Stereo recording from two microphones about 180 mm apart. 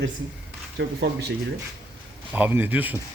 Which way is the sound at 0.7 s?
65° right (ahead or behind).